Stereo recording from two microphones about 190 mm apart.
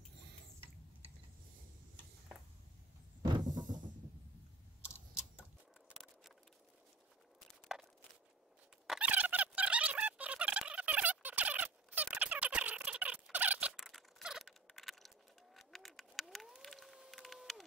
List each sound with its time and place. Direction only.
3.2 s a sound: 20° right (ahead or behind)
7.7 s walk: 5° right (ahead or behind)
8.8 s squeak: 5° right (ahead or behind)